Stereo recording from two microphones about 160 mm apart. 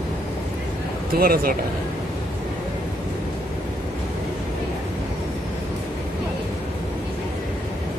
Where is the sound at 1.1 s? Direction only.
65° right (ahead or behind).